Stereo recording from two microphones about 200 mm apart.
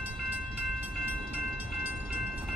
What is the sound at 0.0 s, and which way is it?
Train, 10° right (ahead or behind).